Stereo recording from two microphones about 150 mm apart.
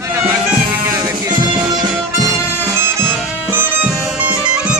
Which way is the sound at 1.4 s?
30° right (ahead or behind).